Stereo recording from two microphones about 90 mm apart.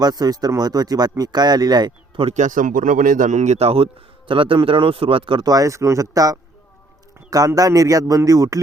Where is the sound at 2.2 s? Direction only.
90° right.